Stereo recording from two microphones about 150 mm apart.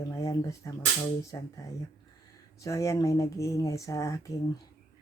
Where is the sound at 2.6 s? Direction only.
20° left (ahead or behind).